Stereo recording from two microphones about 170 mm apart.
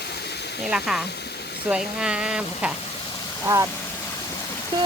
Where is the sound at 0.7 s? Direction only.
5° right (ahead or behind).